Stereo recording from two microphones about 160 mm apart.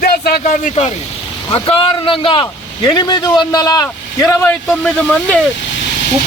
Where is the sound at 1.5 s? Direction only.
35° left (ahead or behind); by 4.8 s 15° left (ahead or behind).